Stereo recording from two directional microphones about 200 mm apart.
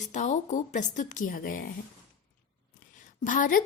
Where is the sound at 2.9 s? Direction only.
40° left (ahead or behind).